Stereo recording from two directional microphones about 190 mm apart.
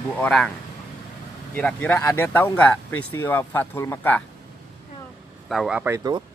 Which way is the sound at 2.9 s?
90° left.